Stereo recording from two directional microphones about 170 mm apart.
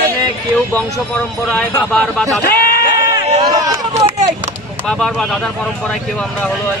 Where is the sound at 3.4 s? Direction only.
20° right (ahead or behind).